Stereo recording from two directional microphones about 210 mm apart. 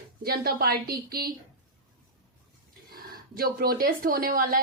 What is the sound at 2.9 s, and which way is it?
Speech, 45° right (ahead or behind).